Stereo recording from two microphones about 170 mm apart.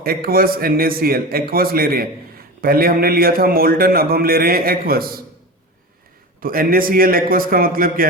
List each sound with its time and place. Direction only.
0.0 s a man's voice: 60° right (ahead or behind)
6.4 s a man's voice: 55° right (ahead or behind)